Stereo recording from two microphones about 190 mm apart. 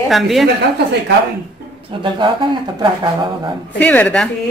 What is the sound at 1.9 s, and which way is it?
Speech, 25° right (ahead or behind).